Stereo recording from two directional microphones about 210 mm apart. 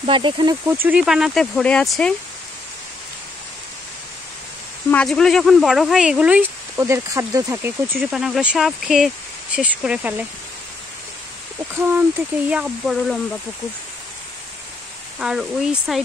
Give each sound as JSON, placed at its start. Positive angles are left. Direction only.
{"t": 0.0, "sound": "speech", "side_deg": -25}
{"t": 0.8, "sound": "speech", "side_deg": -5}
{"t": 4.9, "sound": "speech", "side_deg": 5}
{"t": 11.8, "sound": "speech", "side_deg": -5}
{"t": 15.1, "sound": "speech", "side_deg": -5}